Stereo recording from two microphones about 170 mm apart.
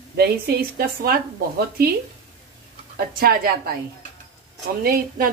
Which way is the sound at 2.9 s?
65° right (ahead or behind).